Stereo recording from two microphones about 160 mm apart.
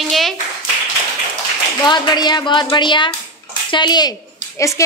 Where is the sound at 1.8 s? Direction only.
25° left (ahead or behind).